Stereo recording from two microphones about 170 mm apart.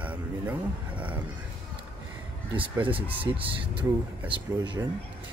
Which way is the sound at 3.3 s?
20° right (ahead or behind).